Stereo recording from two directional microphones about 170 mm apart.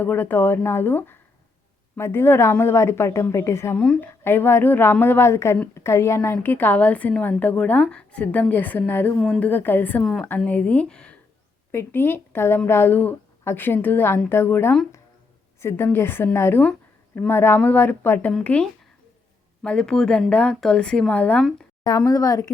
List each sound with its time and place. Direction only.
0.0 s a woman's voice: 10° left (ahead or behind)
21.8 s speech: 20° left (ahead or behind)